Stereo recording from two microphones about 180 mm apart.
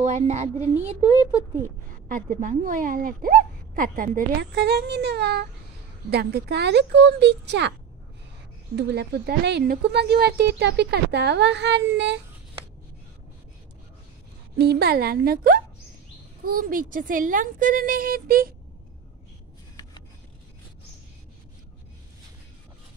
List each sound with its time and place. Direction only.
0.0 s speech: 40° right (ahead or behind)
2.0 s a woman's voice: 45° right (ahead or behind)
4.6 s speech: 65° right (ahead or behind)
8.7 s speech: 65° right (ahead or behind)
14.6 s a woman's voice: 60° right (ahead or behind)